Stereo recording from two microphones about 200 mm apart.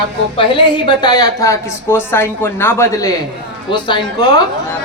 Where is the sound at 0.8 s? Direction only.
20° left (ahead or behind).